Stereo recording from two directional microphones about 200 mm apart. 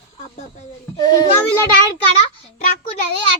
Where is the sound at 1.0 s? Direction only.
20° left (ahead or behind).